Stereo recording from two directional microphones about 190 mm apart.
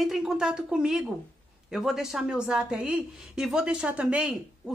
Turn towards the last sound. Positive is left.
turn(degrees=-5)  # may be behind; listen again after turning